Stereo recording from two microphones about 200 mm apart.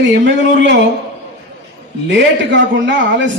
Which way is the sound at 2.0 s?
65° right (ahead or behind).